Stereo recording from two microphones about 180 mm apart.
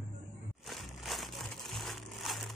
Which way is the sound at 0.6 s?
Centre (ahead or behind).